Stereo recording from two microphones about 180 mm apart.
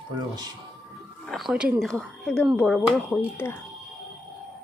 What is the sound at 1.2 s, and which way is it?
Speech, centre (ahead or behind).